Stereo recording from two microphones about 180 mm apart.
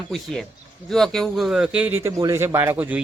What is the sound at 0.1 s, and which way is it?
Speech, centre (ahead or behind).